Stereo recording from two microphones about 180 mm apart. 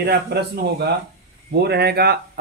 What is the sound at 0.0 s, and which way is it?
Speech, 65° right (ahead or behind).